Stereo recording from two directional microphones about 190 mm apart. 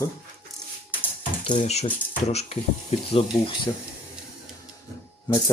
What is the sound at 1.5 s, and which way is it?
Speech, 35° left (ahead or behind).